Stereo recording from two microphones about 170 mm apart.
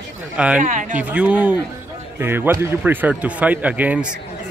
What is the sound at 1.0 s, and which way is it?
A man's voice, 10° right (ahead or behind).